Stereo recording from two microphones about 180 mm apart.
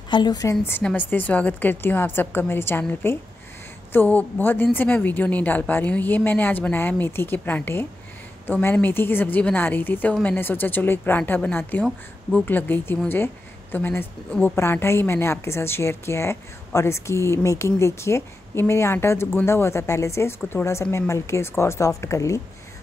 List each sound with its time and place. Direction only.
0.1 s speech: 25° left (ahead or behind)